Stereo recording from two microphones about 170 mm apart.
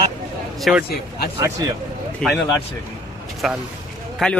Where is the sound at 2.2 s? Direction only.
5° left (ahead or behind).